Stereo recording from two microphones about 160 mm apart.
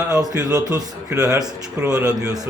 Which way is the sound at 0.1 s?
20° right (ahead or behind).